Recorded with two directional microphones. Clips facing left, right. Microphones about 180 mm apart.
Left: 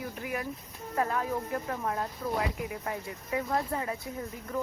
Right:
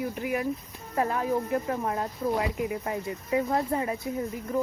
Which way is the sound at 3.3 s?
20° right (ahead or behind).